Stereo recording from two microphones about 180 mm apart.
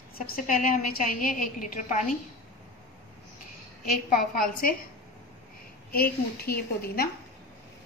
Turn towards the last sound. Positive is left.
turn(degrees=60)  # may be behind; listen again after turning